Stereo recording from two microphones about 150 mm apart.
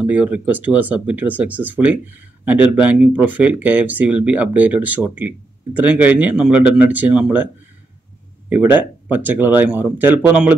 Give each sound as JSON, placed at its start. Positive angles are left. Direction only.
{"t": 0.0, "sound": "speech", "side_deg": -10}
{"t": 8.5, "sound": "speech", "side_deg": -10}